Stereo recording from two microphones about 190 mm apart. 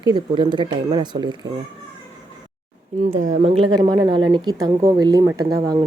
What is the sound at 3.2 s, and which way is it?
Speech, 40° right (ahead or behind).